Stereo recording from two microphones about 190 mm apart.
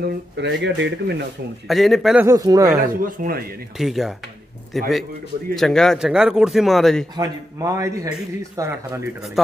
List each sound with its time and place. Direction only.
0.4 s speech: 65° right (ahead or behind)
1.7 s speech: centre (ahead or behind)
2.2 s speech: 20° right (ahead or behind)
3.0 s speech: 45° right (ahead or behind)
3.7 s speech: centre (ahead or behind)
7.2 s a man's voice: 15° right (ahead or behind)